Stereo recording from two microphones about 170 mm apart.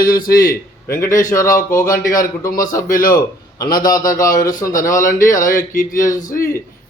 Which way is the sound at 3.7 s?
55° left (ahead or behind).